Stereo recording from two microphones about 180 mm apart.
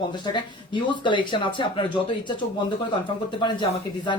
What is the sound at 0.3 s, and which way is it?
Speech, 25° left (ahead or behind).